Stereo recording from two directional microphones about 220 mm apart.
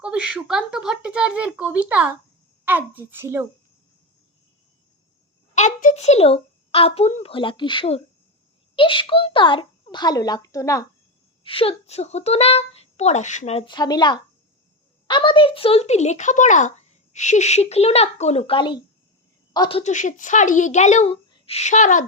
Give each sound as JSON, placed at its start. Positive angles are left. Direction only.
{"t": 0.0, "sound": "a child's voice", "side_deg": -5}
{"t": 5.5, "sound": "speech", "side_deg": 35}
{"t": 11.4, "sound": "speech", "side_deg": 25}
{"t": 19.8, "sound": "a woman's voice", "side_deg": 35}